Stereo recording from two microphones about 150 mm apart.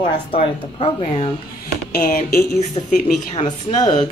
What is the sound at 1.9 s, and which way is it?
Speech, 65° left (ahead or behind).